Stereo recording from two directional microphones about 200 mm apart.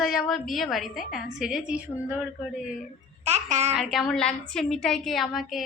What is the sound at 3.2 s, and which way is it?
Babbling, 35° right (ahead or behind).